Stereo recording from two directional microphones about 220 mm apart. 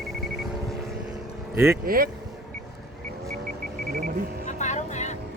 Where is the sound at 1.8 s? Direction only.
40° right (ahead or behind).